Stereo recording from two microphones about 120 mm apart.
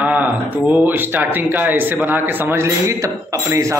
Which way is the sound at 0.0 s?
15° right (ahead or behind).